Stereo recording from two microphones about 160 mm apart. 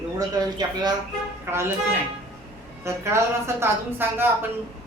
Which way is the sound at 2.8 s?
15° right (ahead or behind).